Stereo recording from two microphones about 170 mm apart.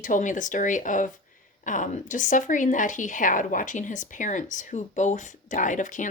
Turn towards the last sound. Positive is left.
turn(degrees=50)  # may be behind; listen again after turning